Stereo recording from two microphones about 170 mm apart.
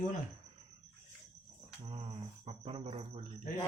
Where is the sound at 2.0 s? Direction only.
30° right (ahead or behind).